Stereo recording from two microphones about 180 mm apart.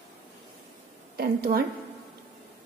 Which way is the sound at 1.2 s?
60° right (ahead or behind).